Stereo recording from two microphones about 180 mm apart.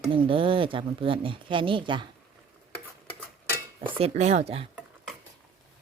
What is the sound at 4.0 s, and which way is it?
Speech, 35° right (ahead or behind).